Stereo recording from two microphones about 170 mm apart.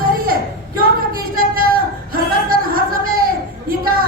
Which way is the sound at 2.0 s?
60° right (ahead or behind).